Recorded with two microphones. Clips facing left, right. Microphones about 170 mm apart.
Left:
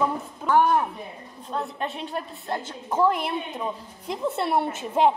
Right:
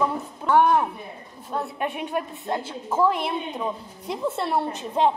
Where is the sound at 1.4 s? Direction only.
10° right (ahead or behind).